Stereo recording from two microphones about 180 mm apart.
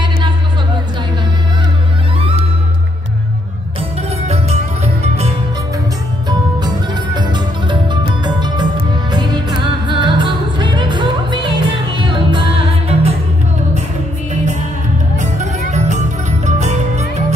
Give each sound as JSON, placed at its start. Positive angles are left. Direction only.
{"t": 7.2, "sound": "music", "side_deg": -25}
{"t": 14.3, "sound": "music", "side_deg": -40}